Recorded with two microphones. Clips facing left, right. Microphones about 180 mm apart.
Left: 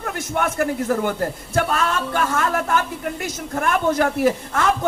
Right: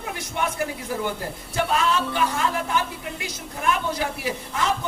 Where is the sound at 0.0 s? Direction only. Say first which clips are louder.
Left 4 dB; 50° left (ahead or behind).